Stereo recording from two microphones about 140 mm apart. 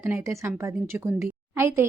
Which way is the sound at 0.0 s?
20° right (ahead or behind).